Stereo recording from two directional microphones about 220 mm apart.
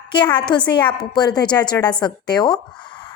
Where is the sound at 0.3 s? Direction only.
20° left (ahead or behind).